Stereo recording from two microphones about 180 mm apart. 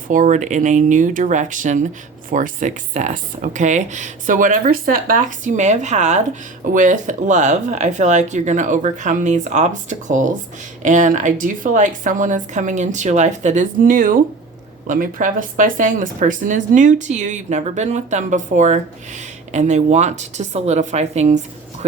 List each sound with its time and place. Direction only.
0.1 s speech: 45° right (ahead or behind)